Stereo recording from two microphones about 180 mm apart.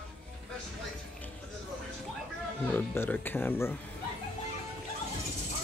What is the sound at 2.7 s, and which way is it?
Speech, 10° left (ahead or behind).